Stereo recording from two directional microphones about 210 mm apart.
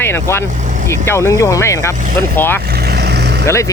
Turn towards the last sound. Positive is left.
turn(degrees=15)  # may be behind; listen again after turning